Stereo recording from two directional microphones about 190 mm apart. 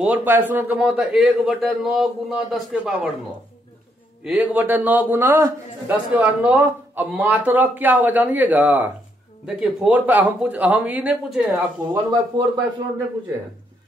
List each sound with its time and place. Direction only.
0.0 s a man's voice: 10° right (ahead or behind)
4.2 s a man's voice: 5° right (ahead or behind)
11.9 s a man's voice: 15° right (ahead or behind)